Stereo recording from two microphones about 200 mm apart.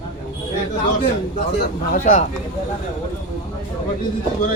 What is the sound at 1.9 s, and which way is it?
Speech, 40° left (ahead or behind).